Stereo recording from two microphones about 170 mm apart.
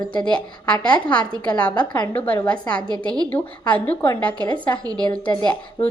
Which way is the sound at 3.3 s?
10° left (ahead or behind).